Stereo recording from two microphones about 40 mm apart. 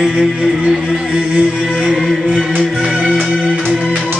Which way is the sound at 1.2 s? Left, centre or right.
Right.